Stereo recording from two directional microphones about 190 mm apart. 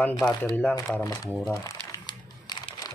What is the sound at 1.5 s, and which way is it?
Crumpling, 20° left (ahead or behind).